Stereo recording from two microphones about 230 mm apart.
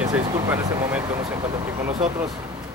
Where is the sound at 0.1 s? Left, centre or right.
Centre.